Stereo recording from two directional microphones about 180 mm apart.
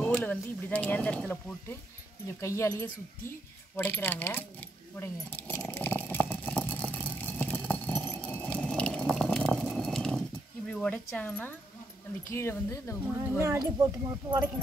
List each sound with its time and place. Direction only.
0.0 s speech: 10° left (ahead or behind)
2.4 s a sound: 15° left (ahead or behind)
10.7 s speech: 5° left (ahead or behind)
13.4 s speech: 15° right (ahead or behind)